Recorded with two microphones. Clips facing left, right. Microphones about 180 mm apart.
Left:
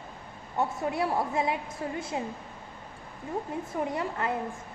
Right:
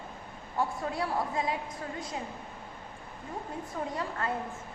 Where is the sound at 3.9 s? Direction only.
20° left (ahead or behind).